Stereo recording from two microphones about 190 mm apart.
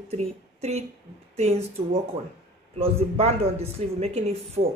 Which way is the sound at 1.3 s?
35° right (ahead or behind).